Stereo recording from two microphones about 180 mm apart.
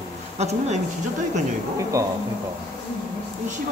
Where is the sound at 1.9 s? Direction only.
15° right (ahead or behind).